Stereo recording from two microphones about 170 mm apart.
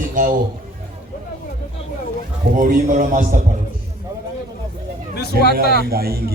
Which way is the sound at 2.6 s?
55° right (ahead or behind).